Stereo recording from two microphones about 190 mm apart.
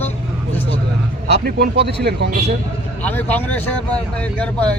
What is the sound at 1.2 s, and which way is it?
A man's voice, 60° right (ahead or behind).